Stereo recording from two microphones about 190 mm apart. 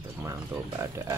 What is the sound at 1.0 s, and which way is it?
Speech, 15° right (ahead or behind).